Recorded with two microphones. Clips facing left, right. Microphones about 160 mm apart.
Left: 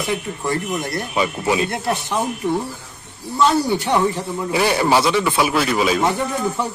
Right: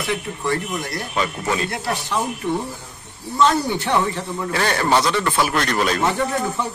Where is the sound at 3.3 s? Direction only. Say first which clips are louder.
Left 1 dB; 10° left (ahead or behind).